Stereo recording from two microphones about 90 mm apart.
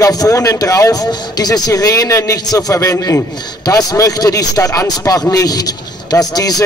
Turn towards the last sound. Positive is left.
turn(degrees=45)  # may be behind; listen again after turning